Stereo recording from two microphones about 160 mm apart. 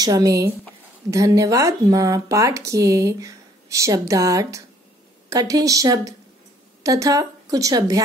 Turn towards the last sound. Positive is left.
turn(degrees=-20)  # may be behind; listen again after turning